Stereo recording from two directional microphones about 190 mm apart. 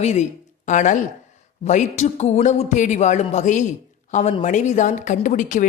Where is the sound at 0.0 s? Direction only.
35° left (ahead or behind).